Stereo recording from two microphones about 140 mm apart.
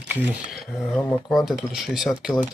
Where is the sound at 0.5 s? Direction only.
Centre (ahead or behind).